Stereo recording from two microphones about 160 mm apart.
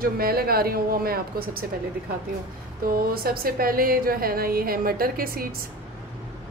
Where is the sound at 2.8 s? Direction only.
70° right (ahead or behind).